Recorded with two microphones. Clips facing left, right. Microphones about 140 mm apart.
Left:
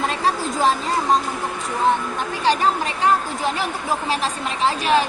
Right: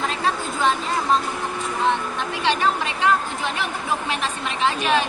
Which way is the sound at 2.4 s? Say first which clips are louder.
Left 3 dB; 40° left (ahead or behind).